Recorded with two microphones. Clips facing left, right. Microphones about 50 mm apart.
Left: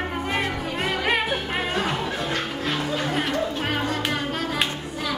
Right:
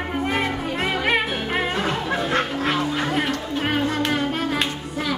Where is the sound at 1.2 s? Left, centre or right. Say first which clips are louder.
Right 2 dB; centre.